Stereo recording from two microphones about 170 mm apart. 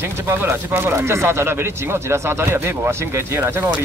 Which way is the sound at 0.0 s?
15° right (ahead or behind).